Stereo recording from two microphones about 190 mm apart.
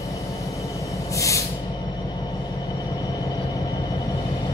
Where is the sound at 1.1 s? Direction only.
15° left (ahead or behind).